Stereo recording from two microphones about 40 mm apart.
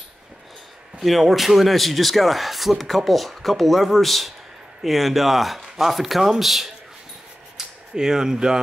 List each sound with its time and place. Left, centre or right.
1.0 s speech: centre